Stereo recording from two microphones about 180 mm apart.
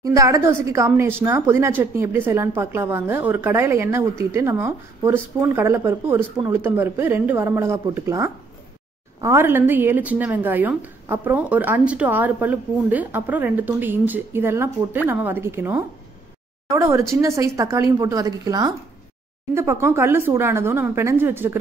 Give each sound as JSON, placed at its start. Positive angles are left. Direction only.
{"t": 0.0, "sound": "a woman's voice", "side_deg": -20}